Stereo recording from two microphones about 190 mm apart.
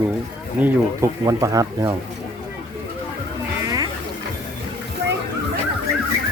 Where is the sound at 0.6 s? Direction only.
15° right (ahead or behind).